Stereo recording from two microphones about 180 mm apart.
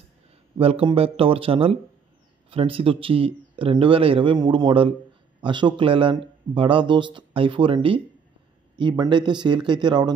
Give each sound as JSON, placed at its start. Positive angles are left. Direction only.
{"t": 0.6, "sound": "a man's voice", "side_deg": -30}